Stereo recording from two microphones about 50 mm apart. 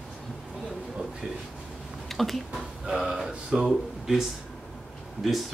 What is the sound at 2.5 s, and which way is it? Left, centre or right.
Speech, centre.